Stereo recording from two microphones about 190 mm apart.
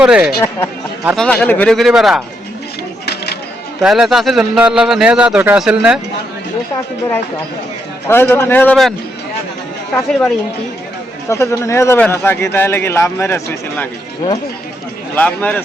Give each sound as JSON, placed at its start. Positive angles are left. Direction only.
{"t": 0.0, "sound": "a man's voice", "side_deg": -5}
{"t": 0.3, "sound": "a man's voice", "side_deg": 15}
{"t": 1.1, "sound": "a man's voice", "side_deg": 5}
{"t": 3.8, "sound": "a man's voice", "side_deg": 0}
{"t": 8.0, "sound": "a man's voice", "side_deg": 10}
{"t": 9.9, "sound": "a man's voice", "side_deg": 5}
{"t": 15.1, "sound": "a man's voice", "side_deg": 10}